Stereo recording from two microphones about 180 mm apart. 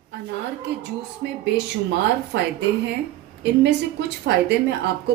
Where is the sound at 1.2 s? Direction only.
70° right (ahead or behind).